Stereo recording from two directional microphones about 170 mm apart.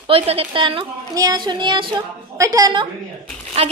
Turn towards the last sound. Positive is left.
turn(degrees=-35)  # may be behind; listen again after turning